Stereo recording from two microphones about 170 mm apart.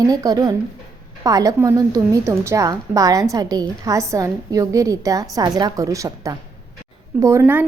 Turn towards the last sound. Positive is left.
turn(degrees=-10)  # may be behind; listen again after turning